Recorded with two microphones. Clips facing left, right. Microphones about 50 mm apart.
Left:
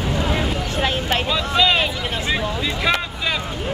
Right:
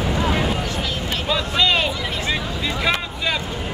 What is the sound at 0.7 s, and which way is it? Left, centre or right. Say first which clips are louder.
Vehicle: left 4 dB; left.